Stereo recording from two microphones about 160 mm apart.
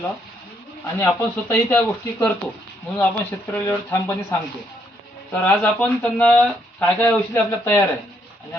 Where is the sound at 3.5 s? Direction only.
15° left (ahead or behind).